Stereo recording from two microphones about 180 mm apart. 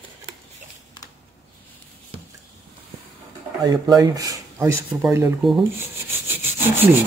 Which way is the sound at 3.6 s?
20° right (ahead or behind).